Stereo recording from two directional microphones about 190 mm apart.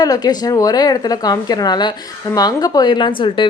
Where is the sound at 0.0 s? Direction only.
20° left (ahead or behind).